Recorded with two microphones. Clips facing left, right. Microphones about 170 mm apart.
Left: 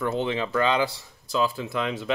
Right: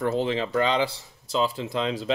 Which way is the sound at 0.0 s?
35° right (ahead or behind).